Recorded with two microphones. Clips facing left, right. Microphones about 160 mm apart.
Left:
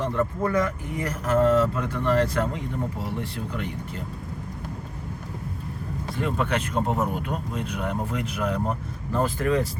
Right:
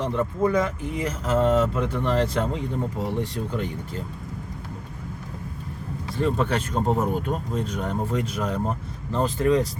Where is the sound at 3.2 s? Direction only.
35° right (ahead or behind).